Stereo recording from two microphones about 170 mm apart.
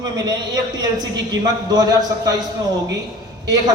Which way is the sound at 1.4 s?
20° right (ahead or behind).